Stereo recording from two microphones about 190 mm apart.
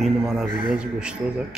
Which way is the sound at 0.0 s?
Centre (ahead or behind).